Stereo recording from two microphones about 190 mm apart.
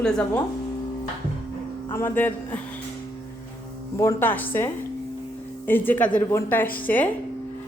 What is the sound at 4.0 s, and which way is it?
Speech, 10° left (ahead or behind).